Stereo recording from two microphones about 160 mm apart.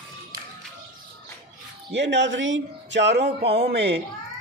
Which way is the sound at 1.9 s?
90° right.